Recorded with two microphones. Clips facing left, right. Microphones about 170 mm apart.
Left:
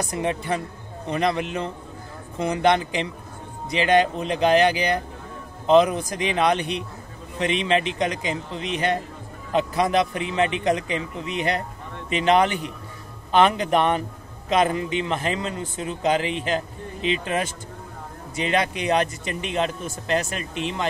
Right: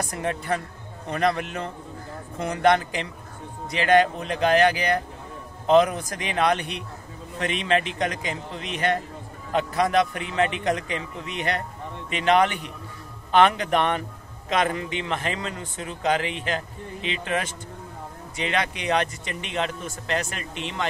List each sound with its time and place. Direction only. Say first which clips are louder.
0.1 s a man's voice: left 2 dB; 20° left (ahead or behind)